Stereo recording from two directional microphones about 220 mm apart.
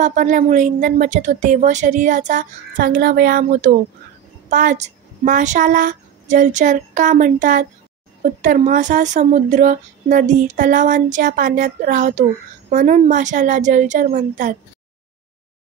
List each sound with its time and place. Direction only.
0.0 s a woman's voice: 35° right (ahead or behind)